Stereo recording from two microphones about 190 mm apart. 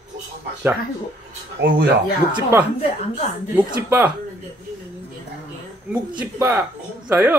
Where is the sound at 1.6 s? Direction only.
70° right (ahead or behind).